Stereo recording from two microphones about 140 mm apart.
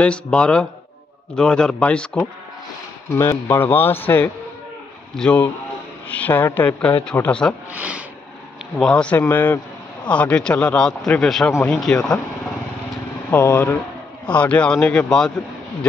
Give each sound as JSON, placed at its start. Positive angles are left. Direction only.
{"t": 0.0, "sound": "speech", "side_deg": 5}
{"t": 7.7, "sound": "speech", "side_deg": -10}
{"t": 8.7, "sound": "speech", "side_deg": 5}
{"t": 13.3, "sound": "speech", "side_deg": 15}